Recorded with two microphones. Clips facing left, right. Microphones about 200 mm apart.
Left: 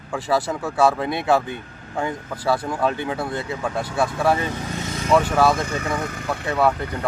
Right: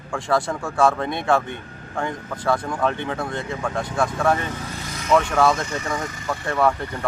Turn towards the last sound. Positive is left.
turn(degrees=5)  # may be behind; listen again after turning